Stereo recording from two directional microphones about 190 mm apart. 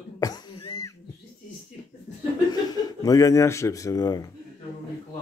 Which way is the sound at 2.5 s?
20° left (ahead or behind).